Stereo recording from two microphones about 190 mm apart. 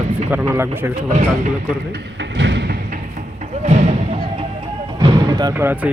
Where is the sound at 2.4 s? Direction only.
65° right (ahead or behind).